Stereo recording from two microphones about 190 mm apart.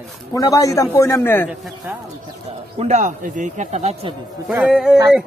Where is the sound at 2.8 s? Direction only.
40° right (ahead or behind).